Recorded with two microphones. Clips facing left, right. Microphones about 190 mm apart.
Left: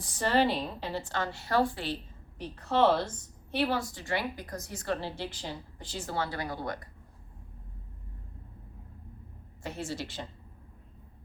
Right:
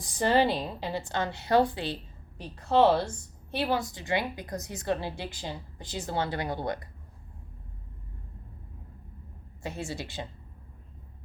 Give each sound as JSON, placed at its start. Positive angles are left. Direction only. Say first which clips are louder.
{"t": 0.0, "sound": "a woman's voice", "louder": "right 2 dB", "side_deg": -15}
{"t": 9.6, "sound": "a woman's voice", "louder": "right 1 dB", "side_deg": -15}